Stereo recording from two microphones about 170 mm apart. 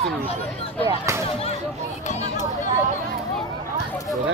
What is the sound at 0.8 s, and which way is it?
Speech, 20° right (ahead or behind).